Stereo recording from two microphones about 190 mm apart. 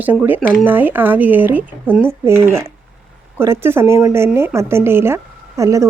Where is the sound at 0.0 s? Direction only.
10° right (ahead or behind).